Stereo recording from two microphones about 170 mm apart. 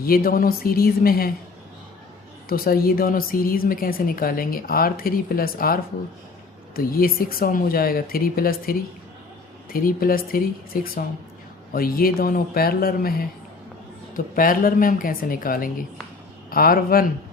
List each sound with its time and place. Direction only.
0.0 s a woman's voice: 60° left (ahead or behind)
2.5 s a woman's voice: 60° left (ahead or behind)